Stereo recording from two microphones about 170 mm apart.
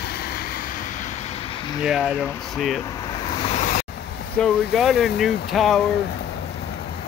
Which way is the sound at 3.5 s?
50° left (ahead or behind).